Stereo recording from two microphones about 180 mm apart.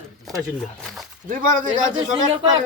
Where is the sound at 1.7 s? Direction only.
25° right (ahead or behind).